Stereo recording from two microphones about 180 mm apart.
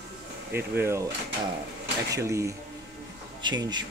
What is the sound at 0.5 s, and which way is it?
Speech, 15° right (ahead or behind).